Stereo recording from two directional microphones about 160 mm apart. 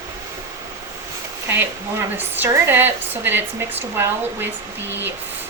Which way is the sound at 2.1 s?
10° right (ahead or behind).